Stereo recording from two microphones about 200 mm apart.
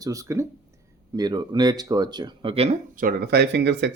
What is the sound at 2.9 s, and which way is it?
Speech, 50° right (ahead or behind).